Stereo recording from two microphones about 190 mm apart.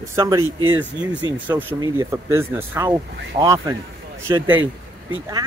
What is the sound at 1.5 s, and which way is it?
Speech, 20° right (ahead or behind).